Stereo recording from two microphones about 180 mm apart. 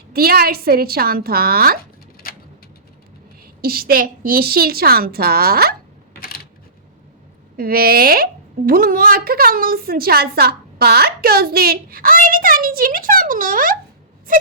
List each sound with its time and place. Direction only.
0.1 s a woman's voice: 60° right (ahead or behind)
3.6 s a woman's voice: 55° right (ahead or behind)
6.1 s camera: 55° left (ahead or behind)
7.5 s a woman's voice: 55° right (ahead or behind)
14.3 s a sound: 50° right (ahead or behind)